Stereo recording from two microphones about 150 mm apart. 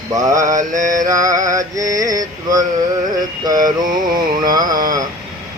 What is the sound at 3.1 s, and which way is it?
Music, 25° right (ahead or behind).